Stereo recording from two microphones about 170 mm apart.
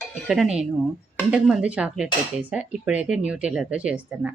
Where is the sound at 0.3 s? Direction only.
5° right (ahead or behind).